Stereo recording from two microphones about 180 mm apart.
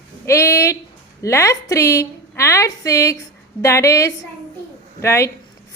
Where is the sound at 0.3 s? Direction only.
15° left (ahead or behind).